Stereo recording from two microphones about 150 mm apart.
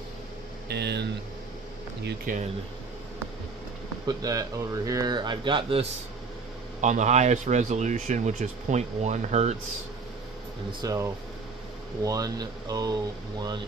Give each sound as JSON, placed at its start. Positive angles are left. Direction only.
{"t": 0.7, "sound": "speech", "side_deg": -90}
{"t": 2.3, "sound": "speech", "side_deg": -60}
{"t": 4.2, "sound": "speech", "side_deg": -25}
{"t": 6.8, "sound": "a man's voice", "side_deg": -55}
{"t": 10.8, "sound": "speech", "side_deg": -25}